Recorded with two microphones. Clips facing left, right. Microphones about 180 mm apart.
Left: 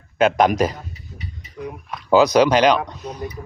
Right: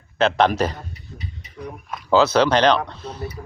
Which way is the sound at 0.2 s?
10° left (ahead or behind).